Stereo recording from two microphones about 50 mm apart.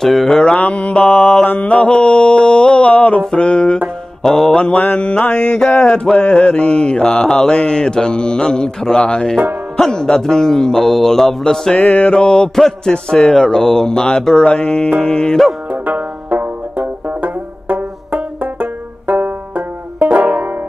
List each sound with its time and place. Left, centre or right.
0.0 s mantra: centre
0.6 s mantra: left
4.2 s mantra: centre
4.6 s mantra: left; by 11.7 s centre
11.8 s music: left
12.1 s mantra: centre
14.5 s mantra: left
15.7 s music: right
17.2 s banjo: right